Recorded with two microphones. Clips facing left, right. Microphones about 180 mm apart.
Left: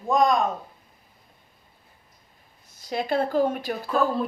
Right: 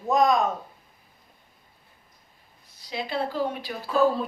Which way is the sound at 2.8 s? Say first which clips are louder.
Left 5 dB; 50° left (ahead or behind).